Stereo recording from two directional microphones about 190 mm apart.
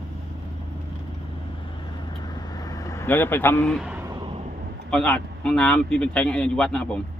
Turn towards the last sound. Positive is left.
turn(degrees=5)  # may be behind; listen again after turning